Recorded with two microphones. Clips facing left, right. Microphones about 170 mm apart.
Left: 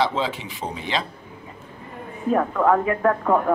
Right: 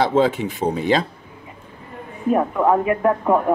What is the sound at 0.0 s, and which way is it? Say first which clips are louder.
Speech: right 6 dB; 50° right (ahead or behind).